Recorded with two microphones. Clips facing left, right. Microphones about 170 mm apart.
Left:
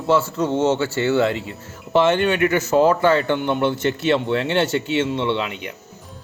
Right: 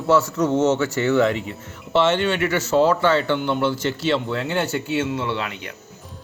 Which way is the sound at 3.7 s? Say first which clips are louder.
Left 3 dB; 60° left (ahead or behind).